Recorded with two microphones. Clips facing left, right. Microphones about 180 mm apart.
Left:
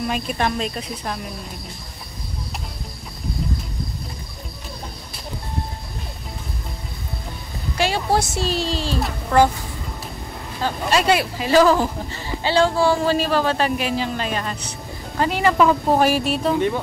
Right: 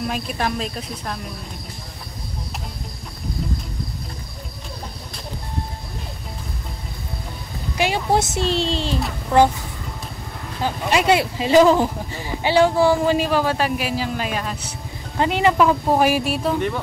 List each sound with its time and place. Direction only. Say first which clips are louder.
0.0 s speech: left 1 dB; centre (ahead or behind)
7.7 s speech: right 1 dB; 15° right (ahead or behind)
9.3 s speech: right 1 dB; 15° right (ahead or behind)
10.6 s speech: even; 15° right (ahead or behind)
15.1 s speech: right 1 dB; 20° right (ahead or behind)
15.5 s speech: left 1 dB; 5° right (ahead or behind)